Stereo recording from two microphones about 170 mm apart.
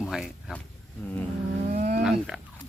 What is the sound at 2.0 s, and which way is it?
Speech, centre (ahead or behind).